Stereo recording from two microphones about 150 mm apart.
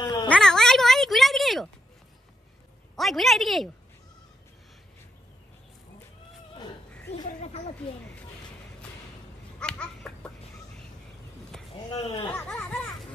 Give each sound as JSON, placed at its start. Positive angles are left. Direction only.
{"t": 0.0, "sound": "cat", "side_deg": 30}
{"t": 0.3, "sound": "music", "side_deg": 5}
{"t": 3.0, "sound": "a woman's voice", "side_deg": 0}
{"t": 7.4, "sound": "a sound", "side_deg": 45}
{"t": 9.6, "sound": "a sound", "side_deg": 5}
{"t": 11.9, "sound": "speech", "side_deg": 35}
{"t": 12.4, "sound": "a child's voice", "side_deg": 5}